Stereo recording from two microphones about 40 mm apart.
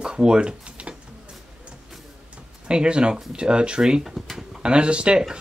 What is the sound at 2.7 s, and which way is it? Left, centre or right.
Speech, right.